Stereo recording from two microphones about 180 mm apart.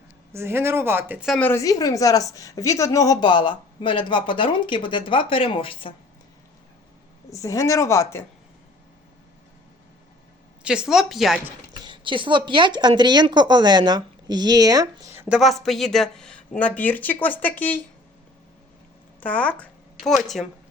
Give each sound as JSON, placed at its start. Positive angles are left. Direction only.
{"t": 0.3, "sound": "speech", "side_deg": -15}
{"t": 1.3, "sound": "a woman's voice", "side_deg": 10}
{"t": 7.3, "sound": "speech", "side_deg": 15}
{"t": 10.6, "sound": "a woman's voice", "side_deg": -5}
{"t": 11.8, "sound": "speech", "side_deg": -25}
{"t": 15.4, "sound": "speech", "side_deg": 0}
{"t": 19.2, "sound": "speech", "side_deg": 5}